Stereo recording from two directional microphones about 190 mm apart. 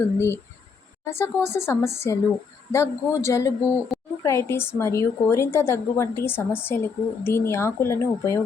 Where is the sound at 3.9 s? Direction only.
Centre (ahead or behind).